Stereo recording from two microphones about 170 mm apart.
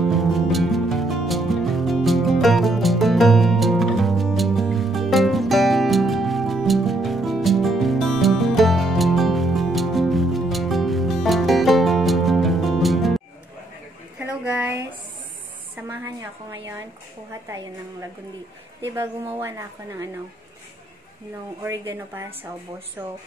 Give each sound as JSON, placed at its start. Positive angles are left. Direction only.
{"t": 0.0, "sound": "music", "side_deg": 0}
{"t": 14.1, "sound": "a sound", "side_deg": -10}
{"t": 17.3, "sound": "speech", "side_deg": -20}
{"t": 19.4, "sound": "speech", "side_deg": -20}
{"t": 21.6, "sound": "a woman's voice", "side_deg": -15}